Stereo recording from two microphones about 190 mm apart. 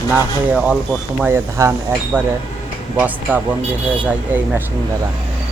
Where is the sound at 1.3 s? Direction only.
15° right (ahead or behind).